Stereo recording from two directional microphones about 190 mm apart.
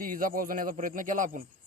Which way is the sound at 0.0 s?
45° right (ahead or behind).